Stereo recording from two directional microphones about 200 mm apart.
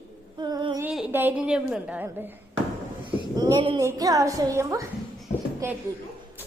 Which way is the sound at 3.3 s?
20° right (ahead or behind).